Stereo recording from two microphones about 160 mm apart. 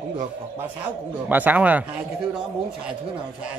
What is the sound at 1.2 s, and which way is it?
Speech, 10° right (ahead or behind).